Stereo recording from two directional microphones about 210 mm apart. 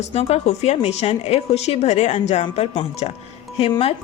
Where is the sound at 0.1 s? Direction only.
30° left (ahead or behind).